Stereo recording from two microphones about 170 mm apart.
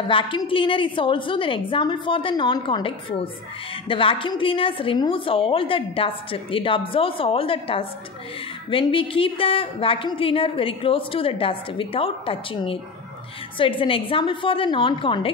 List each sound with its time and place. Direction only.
0.1 s a woman's voice: 30° left (ahead or behind)